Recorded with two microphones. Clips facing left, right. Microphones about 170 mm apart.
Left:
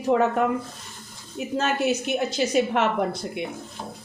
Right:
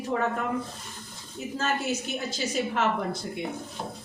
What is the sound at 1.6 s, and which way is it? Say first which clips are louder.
A woman's voice: left 5 dB; 70° left (ahead or behind).